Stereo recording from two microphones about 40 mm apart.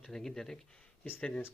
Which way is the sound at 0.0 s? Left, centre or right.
Centre.